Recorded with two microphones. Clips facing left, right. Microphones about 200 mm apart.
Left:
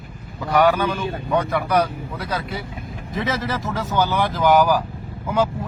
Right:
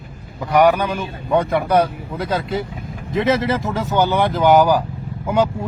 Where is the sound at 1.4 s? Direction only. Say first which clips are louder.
Right 3 dB; 25° right (ahead or behind).